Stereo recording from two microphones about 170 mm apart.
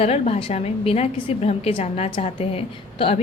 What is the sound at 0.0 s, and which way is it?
A woman's voice, 35° left (ahead or behind).